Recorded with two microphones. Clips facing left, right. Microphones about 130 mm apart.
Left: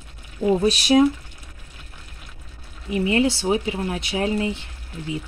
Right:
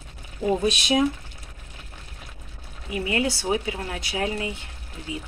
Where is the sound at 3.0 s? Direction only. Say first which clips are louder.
Left 5 dB; 25° left (ahead or behind).